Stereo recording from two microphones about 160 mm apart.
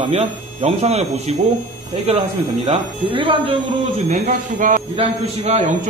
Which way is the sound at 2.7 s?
35° right (ahead or behind).